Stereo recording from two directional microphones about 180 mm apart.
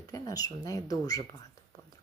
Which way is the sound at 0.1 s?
20° left (ahead or behind).